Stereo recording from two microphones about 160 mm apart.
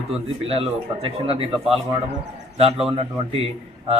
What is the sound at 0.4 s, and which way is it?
A man's voice, 35° right (ahead or behind).